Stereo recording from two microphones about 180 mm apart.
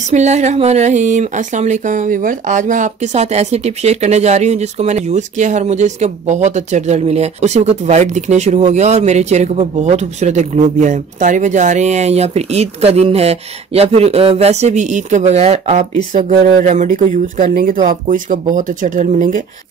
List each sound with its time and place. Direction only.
0.1 s speech: 40° right (ahead or behind)